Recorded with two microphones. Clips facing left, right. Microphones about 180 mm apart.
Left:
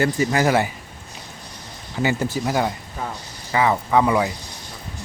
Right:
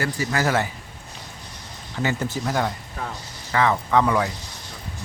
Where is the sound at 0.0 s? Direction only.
20° left (ahead or behind).